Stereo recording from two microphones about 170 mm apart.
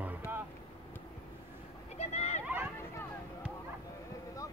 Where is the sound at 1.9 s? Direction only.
40° left (ahead or behind).